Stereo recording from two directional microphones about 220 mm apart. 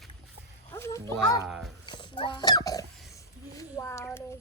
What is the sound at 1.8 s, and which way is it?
Wild animals, 20° left (ahead or behind).